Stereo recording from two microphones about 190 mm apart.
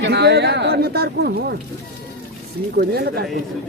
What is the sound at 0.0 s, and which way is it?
Speech, 60° right (ahead or behind).